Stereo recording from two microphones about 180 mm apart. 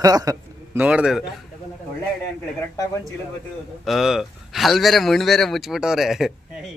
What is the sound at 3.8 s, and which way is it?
Speech, centre (ahead or behind).